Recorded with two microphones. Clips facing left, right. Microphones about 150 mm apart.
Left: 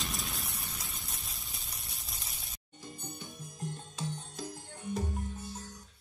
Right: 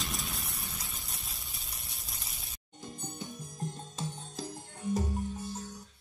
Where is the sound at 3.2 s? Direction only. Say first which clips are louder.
Right 5 dB; 40° right (ahead or behind).